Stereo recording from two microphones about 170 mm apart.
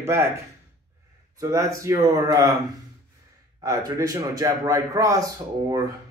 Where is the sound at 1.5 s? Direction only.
20° right (ahead or behind).